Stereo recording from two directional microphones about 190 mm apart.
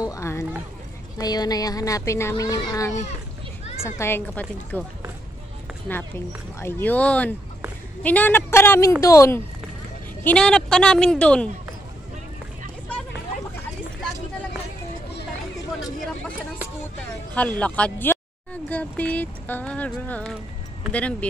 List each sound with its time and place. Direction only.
0.0 s speech: 15° left (ahead or behind)
5.9 s speech: 10° left (ahead or behind)
10.2 s a woman's voice: 5° left (ahead or behind)
17.3 s speech: 5° left (ahead or behind)